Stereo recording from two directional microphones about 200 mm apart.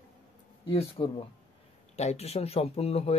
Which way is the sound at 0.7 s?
30° left (ahead or behind).